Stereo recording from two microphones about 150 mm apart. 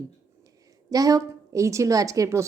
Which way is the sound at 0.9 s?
25° right (ahead or behind).